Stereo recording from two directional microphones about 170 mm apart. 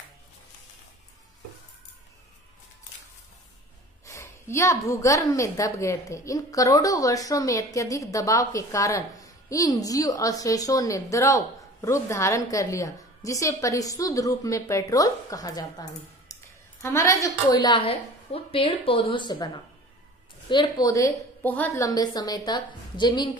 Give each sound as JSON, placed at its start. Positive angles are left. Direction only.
{"t": 4.0, "sound": "a woman's voice", "side_deg": 15}
{"t": 21.8, "sound": "a woman's voice", "side_deg": 20}